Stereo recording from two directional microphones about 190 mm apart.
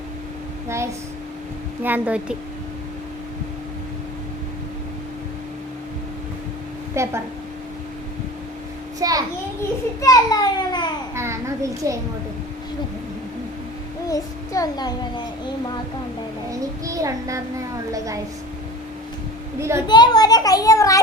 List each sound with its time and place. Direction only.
1.8 s a child's voice: 10° right (ahead or behind)
6.9 s a child's voice: 15° right (ahead or behind)
9.0 s a child's voice: 20° right (ahead or behind)
10.0 s a child's voice: 20° left (ahead or behind)
11.1 s a child's voice: 15° right (ahead or behind)
14.1 s a child's voice: 20° left (ahead or behind)
16.5 s a child's voice: 15° right (ahead or behind)
19.5 s a child's voice: 15° right (ahead or behind)
19.9 s a child's voice: 20° left (ahead or behind)